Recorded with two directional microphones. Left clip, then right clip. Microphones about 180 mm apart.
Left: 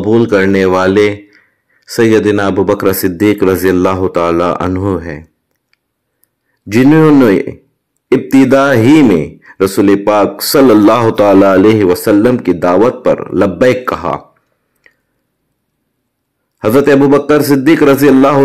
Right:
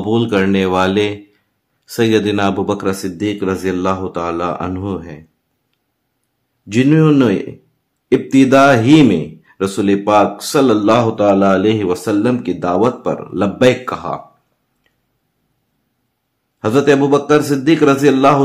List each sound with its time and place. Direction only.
0.0 s a man's voice: 20° left (ahead or behind)
2.8 s speech: 35° left (ahead or behind)
6.7 s a man's voice: 25° left (ahead or behind)
10.9 s speech: 60° left (ahead or behind)
11.6 s a man's voice: 25° left (ahead or behind)
16.5 s a man's voice: 30° left (ahead or behind)